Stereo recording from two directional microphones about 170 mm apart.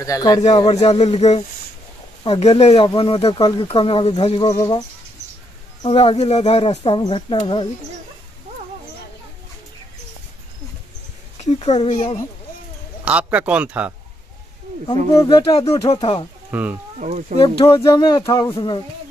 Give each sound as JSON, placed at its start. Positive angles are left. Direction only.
{"t": 0.0, "sound": "speech", "side_deg": 20}
{"t": 0.8, "sound": "speech", "side_deg": 40}
{"t": 4.5, "sound": "speech", "side_deg": 20}
{"t": 5.8, "sound": "speech", "side_deg": 35}
{"t": 11.3, "sound": "speech", "side_deg": 40}
{"t": 13.0, "sound": "a man's voice", "side_deg": -5}
{"t": 15.1, "sound": "speech", "side_deg": 25}
{"t": 16.4, "sound": "speech", "side_deg": -10}
{"t": 17.0, "sound": "speech", "side_deg": -45}
{"t": 17.4, "sound": "speech", "side_deg": 25}